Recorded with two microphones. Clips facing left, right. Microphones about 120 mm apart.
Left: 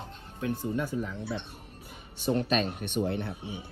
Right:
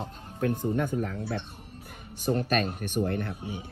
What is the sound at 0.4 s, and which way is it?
Speech, 55° right (ahead or behind).